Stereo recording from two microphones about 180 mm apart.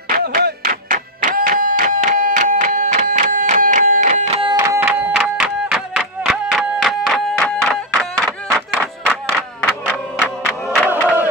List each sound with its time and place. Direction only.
0.1 s music: 55° right (ahead or behind)
4.1 s music: 30° right (ahead or behind)
4.8 s music: 5° right (ahead or behind)
10.7 s crowd: 5° right (ahead or behind)